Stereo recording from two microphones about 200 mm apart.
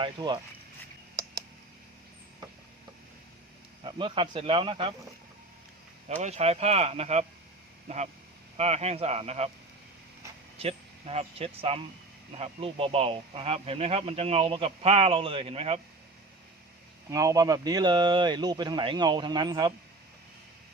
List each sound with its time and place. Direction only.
0.0 s speech: 20° right (ahead or behind)
3.8 s speech: 25° right (ahead or behind)
6.1 s speech: 35° right (ahead or behind)
10.6 s speech: 30° right (ahead or behind)
17.1 s speech: 15° right (ahead or behind)